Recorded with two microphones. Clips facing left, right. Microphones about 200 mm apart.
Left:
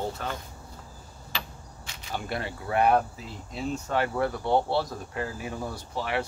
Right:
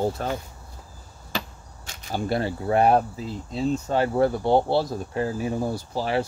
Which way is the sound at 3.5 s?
30° right (ahead or behind).